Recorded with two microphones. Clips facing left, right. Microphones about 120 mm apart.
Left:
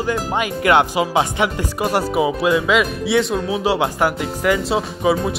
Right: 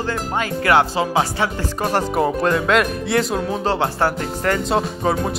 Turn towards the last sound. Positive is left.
turn(degrees=0)  # may be behind; listen again after turning